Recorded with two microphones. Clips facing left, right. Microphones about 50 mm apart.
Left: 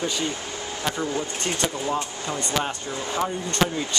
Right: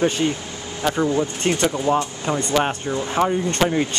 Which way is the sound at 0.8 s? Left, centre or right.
Right.